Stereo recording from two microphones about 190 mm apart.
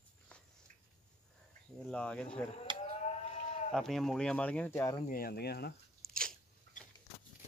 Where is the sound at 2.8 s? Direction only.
35° left (ahead or behind).